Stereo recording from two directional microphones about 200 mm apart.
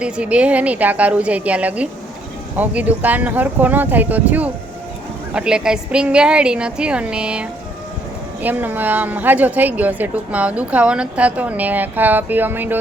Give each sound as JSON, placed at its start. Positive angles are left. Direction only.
{"t": 0.0, "sound": "a woman's voice", "side_deg": -5}